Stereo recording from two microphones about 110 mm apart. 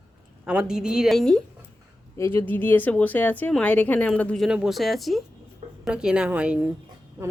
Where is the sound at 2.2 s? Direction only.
20° left (ahead or behind).